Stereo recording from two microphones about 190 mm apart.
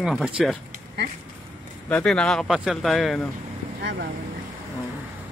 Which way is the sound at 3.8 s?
70° right (ahead or behind).